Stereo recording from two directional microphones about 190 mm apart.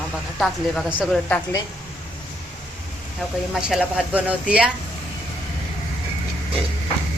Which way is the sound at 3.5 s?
5° right (ahead or behind).